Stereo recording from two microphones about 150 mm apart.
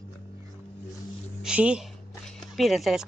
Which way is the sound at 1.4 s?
5° right (ahead or behind).